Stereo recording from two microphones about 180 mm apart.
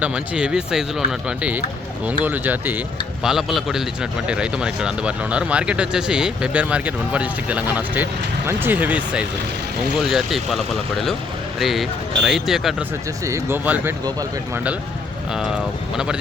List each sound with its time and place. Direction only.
0.0 s speech: 5° right (ahead or behind)
13.2 s speech: 15° right (ahead or behind)